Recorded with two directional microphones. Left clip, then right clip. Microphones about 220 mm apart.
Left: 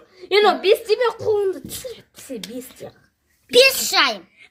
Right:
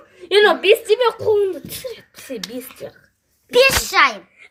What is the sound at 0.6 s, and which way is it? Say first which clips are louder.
Speech: right 3 dB; 15° right (ahead or behind).